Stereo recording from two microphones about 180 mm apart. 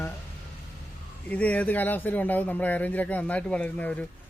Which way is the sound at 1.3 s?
10° left (ahead or behind).